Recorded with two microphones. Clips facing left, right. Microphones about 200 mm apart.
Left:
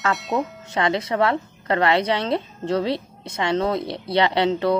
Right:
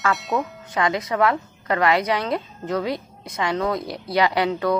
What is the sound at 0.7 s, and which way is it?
Speech, 25° left (ahead or behind).